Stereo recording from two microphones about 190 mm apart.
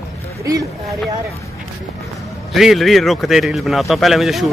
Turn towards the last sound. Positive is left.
turn(degrees=0)  # may be behind; listen again after turning